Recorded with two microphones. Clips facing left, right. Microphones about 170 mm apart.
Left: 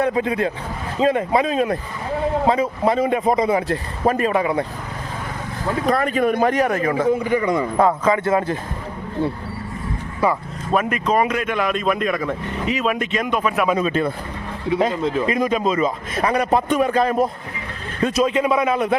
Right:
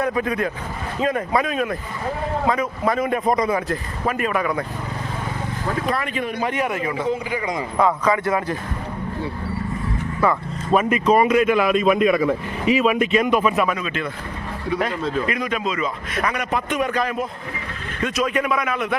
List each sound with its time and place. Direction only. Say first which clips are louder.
0.0 s speech: left 2 dB; 25° left (ahead or behind)
5.8 s speech: left 10 dB; 40° left (ahead or behind)
7.9 s speech: left 2 dB; 25° left (ahead or behind)
10.2 s speech: left 1 dB; 10° left (ahead or behind)
11.0 s a man's voice: right 4 dB; 5° right (ahead or behind)
13.7 s speech: left 7 dB; 35° left (ahead or behind)
14.7 s speech: left 4 dB; 25° left (ahead or behind)
15.6 s speech: left 5 dB; 40° left (ahead or behind)